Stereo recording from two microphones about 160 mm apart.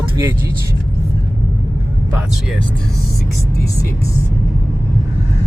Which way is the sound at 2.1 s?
5° right (ahead or behind).